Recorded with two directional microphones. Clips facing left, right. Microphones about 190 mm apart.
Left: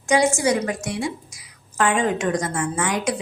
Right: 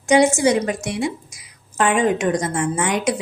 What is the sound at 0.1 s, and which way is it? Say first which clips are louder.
A woman's voice: right 4 dB; 20° right (ahead or behind).